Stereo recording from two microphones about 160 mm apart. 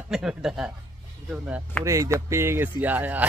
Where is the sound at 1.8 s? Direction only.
20° right (ahead or behind).